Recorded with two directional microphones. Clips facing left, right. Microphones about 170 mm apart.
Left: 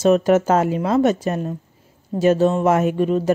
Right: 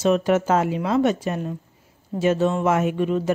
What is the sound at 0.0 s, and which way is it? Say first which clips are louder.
A woman's voice: left 4 dB; 40° left (ahead or behind).